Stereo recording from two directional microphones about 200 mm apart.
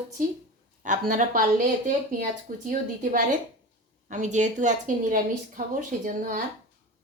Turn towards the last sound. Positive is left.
turn(degrees=-45)  # may be behind; listen again after turning